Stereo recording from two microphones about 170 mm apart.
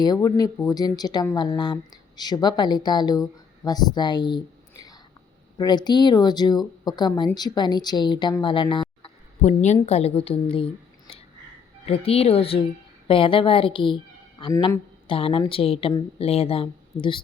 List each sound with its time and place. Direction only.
0.0 s speech: 25° left (ahead or behind)
9.4 s speech: 45° left (ahead or behind)
11.9 s a woman's voice: 35° left (ahead or behind)
14.5 s speech: 20° left (ahead or behind)
15.0 s speech: 30° left (ahead or behind)